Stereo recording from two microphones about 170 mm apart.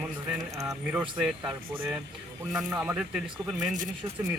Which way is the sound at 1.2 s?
5° right (ahead or behind).